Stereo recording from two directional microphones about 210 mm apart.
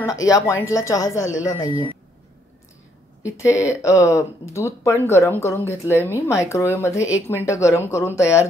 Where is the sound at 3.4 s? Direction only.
15° left (ahead or behind).